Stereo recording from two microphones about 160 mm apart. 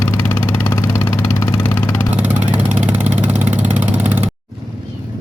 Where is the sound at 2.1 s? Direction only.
10° right (ahead or behind).